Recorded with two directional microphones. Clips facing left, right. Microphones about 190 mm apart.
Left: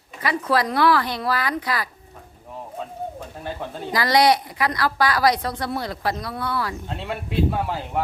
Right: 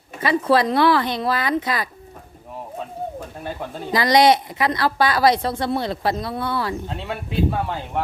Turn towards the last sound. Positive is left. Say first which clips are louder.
# even
turn(degrees=0)  # may be behind; listen again after turning